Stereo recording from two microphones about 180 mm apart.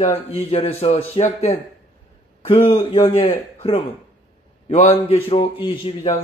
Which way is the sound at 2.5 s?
15° left (ahead or behind).